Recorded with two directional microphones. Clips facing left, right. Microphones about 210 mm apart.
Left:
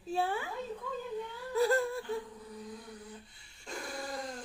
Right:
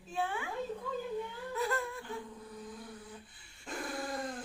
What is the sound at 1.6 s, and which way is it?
Whimper, 35° left (ahead or behind).